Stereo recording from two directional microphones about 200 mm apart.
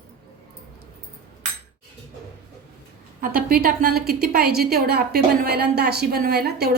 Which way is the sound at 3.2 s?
45° right (ahead or behind).